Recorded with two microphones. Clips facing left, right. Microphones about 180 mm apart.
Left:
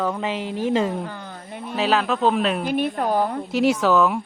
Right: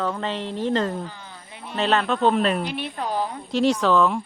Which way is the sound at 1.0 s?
55° left (ahead or behind).